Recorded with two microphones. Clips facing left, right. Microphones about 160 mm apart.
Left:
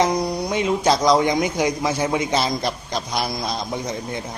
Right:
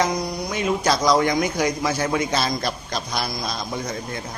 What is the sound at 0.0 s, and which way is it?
Speech, 30° left (ahead or behind).